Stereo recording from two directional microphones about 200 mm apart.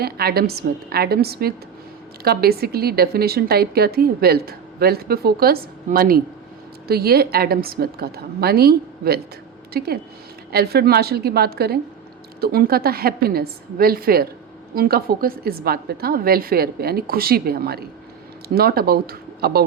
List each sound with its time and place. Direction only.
0.0 s speech: 50° right (ahead or behind)